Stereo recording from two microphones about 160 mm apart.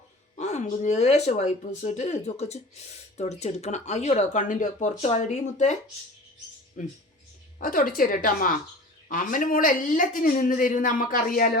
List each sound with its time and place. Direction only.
0.3 s speech: 45° left (ahead or behind)
6.8 s speech: 55° left (ahead or behind)